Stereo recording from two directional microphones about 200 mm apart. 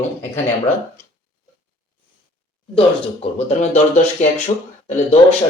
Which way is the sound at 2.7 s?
30° left (ahead or behind).